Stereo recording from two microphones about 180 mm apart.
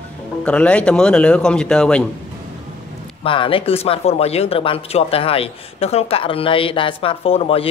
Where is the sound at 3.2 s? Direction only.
30° left (ahead or behind).